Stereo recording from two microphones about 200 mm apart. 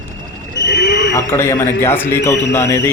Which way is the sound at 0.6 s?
60° left (ahead or behind).